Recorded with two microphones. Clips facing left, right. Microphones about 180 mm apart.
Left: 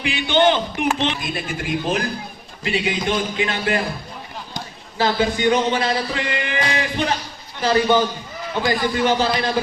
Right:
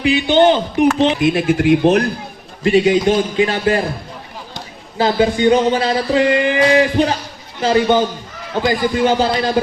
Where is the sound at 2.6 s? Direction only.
40° right (ahead or behind).